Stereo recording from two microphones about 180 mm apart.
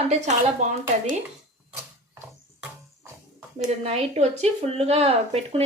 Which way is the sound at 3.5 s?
35° right (ahead or behind).